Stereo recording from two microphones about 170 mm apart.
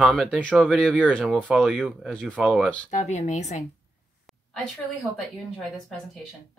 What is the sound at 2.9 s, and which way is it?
Speech, 45° left (ahead or behind).